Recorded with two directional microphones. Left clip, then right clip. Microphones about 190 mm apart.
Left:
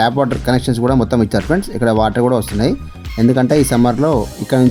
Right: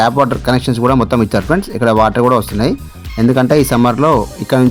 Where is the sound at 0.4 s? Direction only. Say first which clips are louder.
Right 3 dB; 15° right (ahead or behind).